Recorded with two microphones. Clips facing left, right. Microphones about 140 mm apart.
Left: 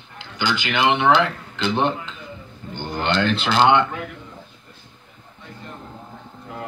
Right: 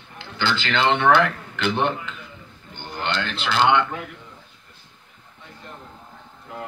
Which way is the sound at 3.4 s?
30° left (ahead or behind).